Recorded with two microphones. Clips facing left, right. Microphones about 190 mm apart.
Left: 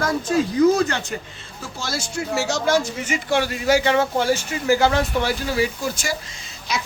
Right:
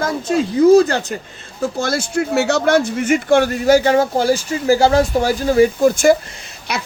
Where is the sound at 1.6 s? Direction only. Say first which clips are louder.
Right 10 dB; 55° right (ahead or behind).